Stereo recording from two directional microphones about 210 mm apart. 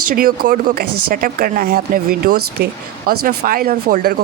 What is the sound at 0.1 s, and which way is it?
Speech, 45° right (ahead or behind).